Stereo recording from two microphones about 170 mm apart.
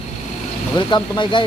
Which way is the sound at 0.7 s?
25° left (ahead or behind).